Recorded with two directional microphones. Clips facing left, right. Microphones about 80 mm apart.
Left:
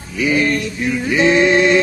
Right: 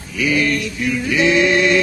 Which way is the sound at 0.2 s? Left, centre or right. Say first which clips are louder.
Left 2 dB; left.